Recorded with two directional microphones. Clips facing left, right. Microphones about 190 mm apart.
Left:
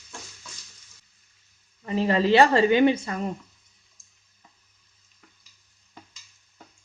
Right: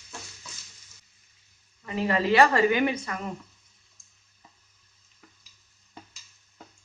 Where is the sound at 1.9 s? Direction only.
30° left (ahead or behind).